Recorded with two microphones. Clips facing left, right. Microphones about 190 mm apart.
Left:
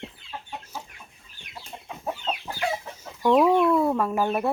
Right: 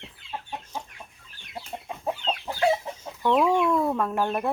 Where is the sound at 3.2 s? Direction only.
10° left (ahead or behind).